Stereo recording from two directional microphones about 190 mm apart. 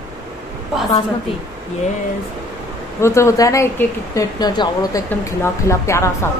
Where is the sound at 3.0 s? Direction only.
15° left (ahead or behind).